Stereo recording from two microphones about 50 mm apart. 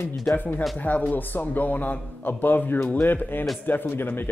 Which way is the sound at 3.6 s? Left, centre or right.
Left.